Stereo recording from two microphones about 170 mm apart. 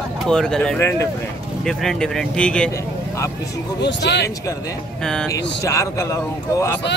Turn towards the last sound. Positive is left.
turn(degrees=15)  # may be behind; listen again after turning